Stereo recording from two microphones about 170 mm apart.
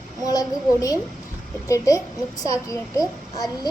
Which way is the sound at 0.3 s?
20° left (ahead or behind).